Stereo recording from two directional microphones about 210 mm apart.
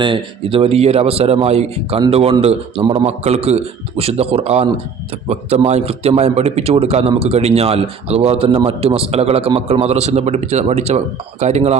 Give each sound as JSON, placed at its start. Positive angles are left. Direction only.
{"t": 0.0, "sound": "a man's voice", "side_deg": -25}